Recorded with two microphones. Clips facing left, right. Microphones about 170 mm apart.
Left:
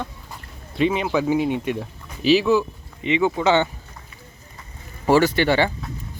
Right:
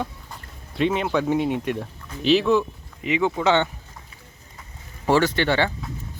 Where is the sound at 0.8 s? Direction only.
Centre (ahead or behind).